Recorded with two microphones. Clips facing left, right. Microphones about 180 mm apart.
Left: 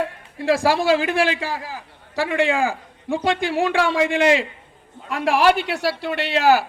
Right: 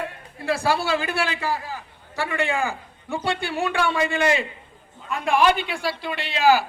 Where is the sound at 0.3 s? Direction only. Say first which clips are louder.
Left 5 dB; 90° left.